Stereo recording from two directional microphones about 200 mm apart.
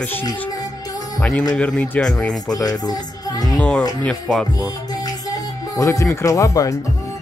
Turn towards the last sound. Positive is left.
turn(degrees=15)  # may be behind; listen again after turning